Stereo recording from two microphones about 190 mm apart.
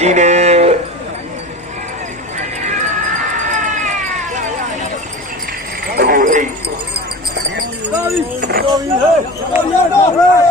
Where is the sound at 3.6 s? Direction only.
40° right (ahead or behind).